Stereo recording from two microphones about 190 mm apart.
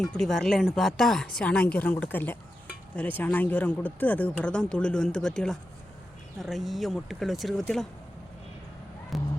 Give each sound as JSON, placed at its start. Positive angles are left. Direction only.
{"t": 0.0, "sound": "speech", "side_deg": 5}
{"t": 9.1, "sound": "music", "side_deg": 0}